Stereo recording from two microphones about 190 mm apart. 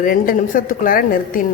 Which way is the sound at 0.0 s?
45° left (ahead or behind).